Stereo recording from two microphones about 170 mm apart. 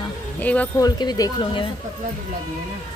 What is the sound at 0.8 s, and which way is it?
Speech, 25° left (ahead or behind).